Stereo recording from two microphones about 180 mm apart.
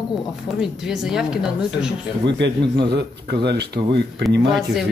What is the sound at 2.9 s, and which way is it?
Speech, 65° right (ahead or behind).